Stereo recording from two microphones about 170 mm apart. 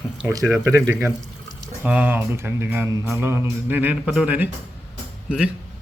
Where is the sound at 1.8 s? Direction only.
10° right (ahead or behind).